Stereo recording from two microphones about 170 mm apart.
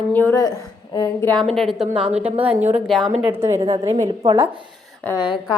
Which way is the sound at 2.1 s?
35° right (ahead or behind).